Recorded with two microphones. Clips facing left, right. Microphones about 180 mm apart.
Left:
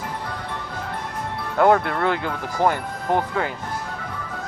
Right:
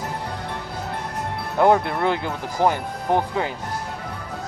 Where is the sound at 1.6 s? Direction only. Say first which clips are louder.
Even; 15° right (ahead or behind).